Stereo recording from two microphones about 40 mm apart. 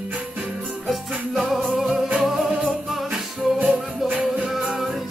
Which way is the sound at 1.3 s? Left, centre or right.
Centre.